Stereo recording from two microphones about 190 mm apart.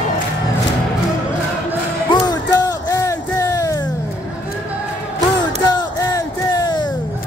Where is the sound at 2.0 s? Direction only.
20° left (ahead or behind).